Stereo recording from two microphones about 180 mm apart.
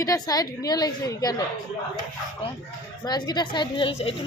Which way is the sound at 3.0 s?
20° left (ahead or behind).